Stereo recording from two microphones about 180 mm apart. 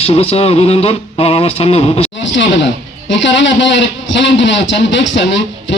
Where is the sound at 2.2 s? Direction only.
90° left.